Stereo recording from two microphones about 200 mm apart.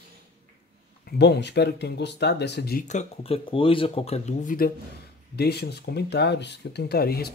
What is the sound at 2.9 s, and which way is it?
Speech, 35° left (ahead or behind).